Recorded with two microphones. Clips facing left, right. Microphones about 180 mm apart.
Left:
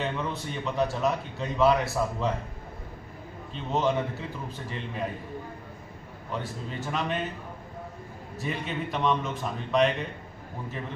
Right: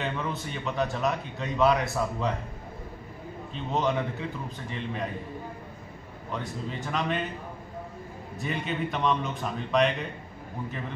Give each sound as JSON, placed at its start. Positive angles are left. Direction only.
{"t": 0.0, "sound": "a man's voice", "side_deg": 0}
{"t": 3.7, "sound": "a man's voice", "side_deg": 0}
{"t": 6.3, "sound": "a man's voice", "side_deg": 0}
{"t": 8.4, "sound": "a man's voice", "side_deg": 0}